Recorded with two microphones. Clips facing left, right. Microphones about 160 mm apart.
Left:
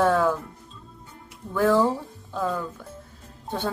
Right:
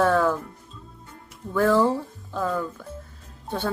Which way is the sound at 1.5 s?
15° left (ahead or behind).